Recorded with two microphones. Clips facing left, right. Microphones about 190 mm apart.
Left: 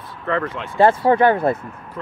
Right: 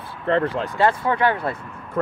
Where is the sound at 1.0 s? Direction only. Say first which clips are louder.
Left 6 dB; 45° left (ahead or behind).